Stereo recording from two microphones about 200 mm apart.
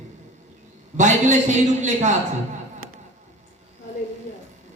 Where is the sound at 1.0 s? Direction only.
35° right (ahead or behind).